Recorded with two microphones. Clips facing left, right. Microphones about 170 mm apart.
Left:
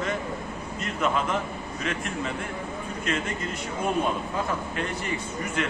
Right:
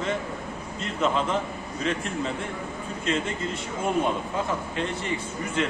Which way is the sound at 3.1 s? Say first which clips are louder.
Right 2 dB; 25° right (ahead or behind).